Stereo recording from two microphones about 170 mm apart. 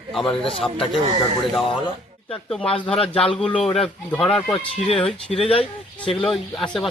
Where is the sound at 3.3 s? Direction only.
5° left (ahead or behind).